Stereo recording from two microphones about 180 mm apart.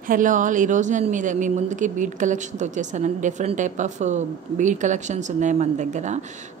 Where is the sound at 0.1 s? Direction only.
45° right (ahead or behind).